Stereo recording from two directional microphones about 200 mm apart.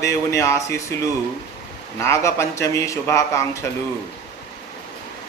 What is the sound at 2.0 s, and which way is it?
Speech, 15° left (ahead or behind).